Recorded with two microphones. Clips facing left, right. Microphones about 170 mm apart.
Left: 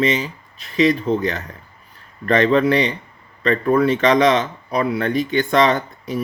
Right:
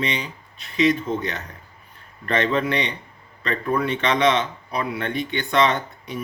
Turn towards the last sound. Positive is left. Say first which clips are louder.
# left 5 dB
turn(degrees=35)  # may be behind; listen again after turning